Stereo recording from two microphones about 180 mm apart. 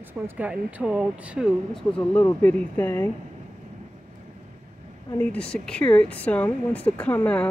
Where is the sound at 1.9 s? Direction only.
10° left (ahead or behind).